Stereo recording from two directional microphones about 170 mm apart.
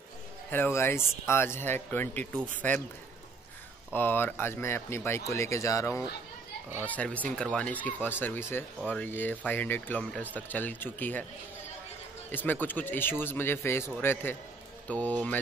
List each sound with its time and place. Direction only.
0.5 s speech: 15° left (ahead or behind)
3.9 s speech: 10° left (ahead or behind)
12.3 s speech: 10° left (ahead or behind)